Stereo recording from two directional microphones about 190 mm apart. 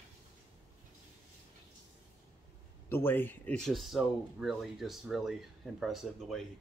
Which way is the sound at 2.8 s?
10° left (ahead or behind).